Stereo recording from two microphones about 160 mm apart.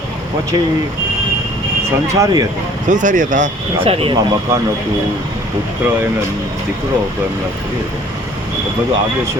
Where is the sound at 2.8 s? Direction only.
50° right (ahead or behind).